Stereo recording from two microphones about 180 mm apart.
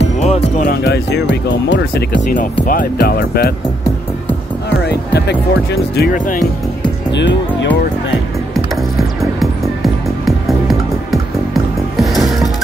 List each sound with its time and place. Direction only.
0.0 s music: 40° left (ahead or behind)
0.7 s speech: 65° left (ahead or behind)
2.7 s speech: 55° left (ahead or behind)
4.6 s speech: 65° left (ahead or behind)
6.1 s speech: 45° left (ahead or behind)
7.1 s speech: 75° left (ahead or behind)
10.2 s music: centre (ahead or behind)